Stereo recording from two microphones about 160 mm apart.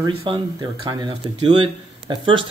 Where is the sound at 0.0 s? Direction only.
35° right (ahead or behind).